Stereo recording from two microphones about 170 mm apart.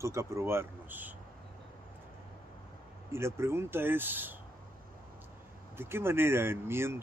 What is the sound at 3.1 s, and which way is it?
Speech, 15° right (ahead or behind).